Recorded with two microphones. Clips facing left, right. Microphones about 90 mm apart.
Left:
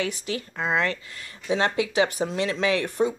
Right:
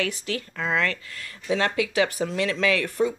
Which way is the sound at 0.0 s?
15° left (ahead or behind).